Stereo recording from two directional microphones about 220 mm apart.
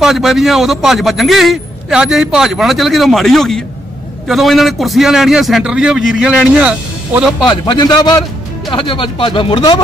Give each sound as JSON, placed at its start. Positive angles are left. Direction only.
{"t": 0.0, "sound": "a man's voice", "side_deg": 0}
{"t": 7.4, "sound": "speech", "side_deg": 20}